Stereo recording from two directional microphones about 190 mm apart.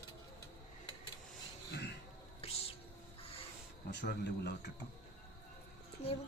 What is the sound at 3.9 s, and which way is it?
Speech, 60° left (ahead or behind).